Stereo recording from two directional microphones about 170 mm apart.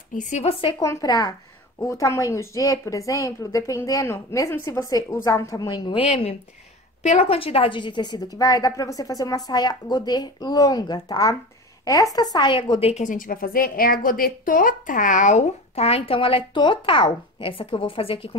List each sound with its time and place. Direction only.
0.2 s speech: 40° left (ahead or behind)
0.7 s a woman's voice: 20° left (ahead or behind)